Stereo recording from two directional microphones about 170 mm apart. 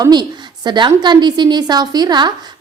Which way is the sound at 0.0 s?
25° right (ahead or behind).